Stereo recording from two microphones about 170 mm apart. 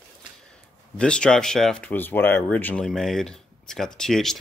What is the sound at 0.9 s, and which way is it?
Speech, 5° left (ahead or behind).